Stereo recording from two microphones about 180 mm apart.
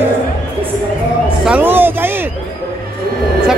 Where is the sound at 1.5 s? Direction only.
10° right (ahead or behind).